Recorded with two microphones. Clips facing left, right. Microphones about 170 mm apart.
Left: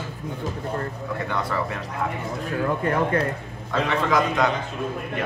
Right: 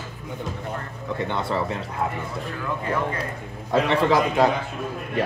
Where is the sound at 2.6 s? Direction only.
55° left (ahead or behind).